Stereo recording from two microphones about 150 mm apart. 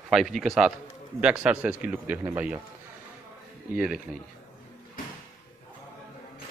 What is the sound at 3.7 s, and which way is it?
Speech, 5° right (ahead or behind).